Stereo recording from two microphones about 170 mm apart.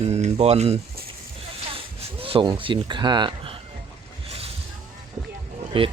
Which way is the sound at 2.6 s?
30° right (ahead or behind).